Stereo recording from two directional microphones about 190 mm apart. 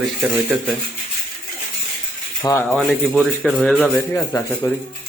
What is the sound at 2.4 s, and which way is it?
Speech, 15° left (ahead or behind).